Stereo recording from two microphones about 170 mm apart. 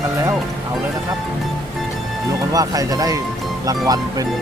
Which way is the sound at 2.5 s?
20° right (ahead or behind).